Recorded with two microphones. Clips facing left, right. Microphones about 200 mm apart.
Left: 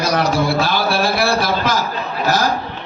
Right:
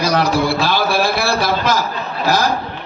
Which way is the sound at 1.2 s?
50° left (ahead or behind).